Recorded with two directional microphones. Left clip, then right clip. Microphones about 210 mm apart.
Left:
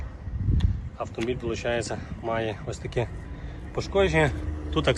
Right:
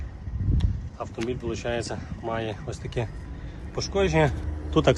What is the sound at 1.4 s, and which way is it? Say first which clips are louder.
A man's voice: left 2 dB; 10° right (ahead or behind).